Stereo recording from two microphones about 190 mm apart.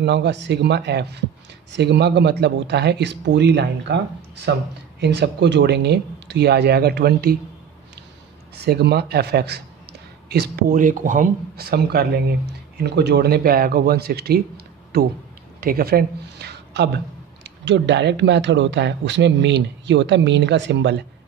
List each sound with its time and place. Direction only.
0.0 s speech: 65° right (ahead or behind)
8.5 s speech: 60° right (ahead or behind)